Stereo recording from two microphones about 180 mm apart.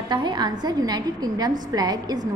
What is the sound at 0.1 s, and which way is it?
A woman's voice, 25° right (ahead or behind).